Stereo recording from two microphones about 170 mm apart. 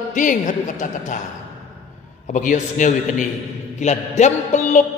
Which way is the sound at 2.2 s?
50° left (ahead or behind).